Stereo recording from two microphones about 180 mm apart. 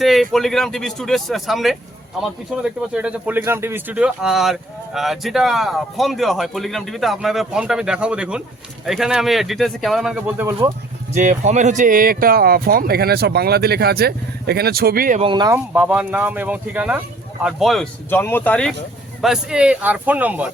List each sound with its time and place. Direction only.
0.0 s speech: centre (ahead or behind)
11.1 s speech: 45° right (ahead or behind)
15.2 s speech: 25° right (ahead or behind)
15.5 s speech: 10° right (ahead or behind)
18.1 s speech: 10° left (ahead or behind)
19.2 s speech: 5° right (ahead or behind)